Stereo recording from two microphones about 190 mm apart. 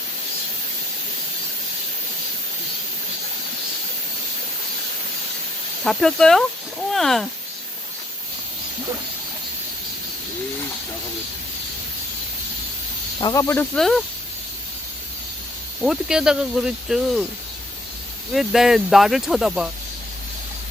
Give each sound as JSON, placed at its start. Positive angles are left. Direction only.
{"t": 5.8, "sound": "speech", "side_deg": 5}
{"t": 13.2, "sound": "speech", "side_deg": 15}
{"t": 13.7, "sound": "speech", "side_deg": 0}
{"t": 15.8, "sound": "speech", "side_deg": -5}
{"t": 18.3, "sound": "speech", "side_deg": 0}